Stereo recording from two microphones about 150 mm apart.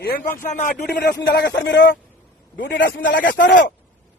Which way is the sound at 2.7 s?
90° left.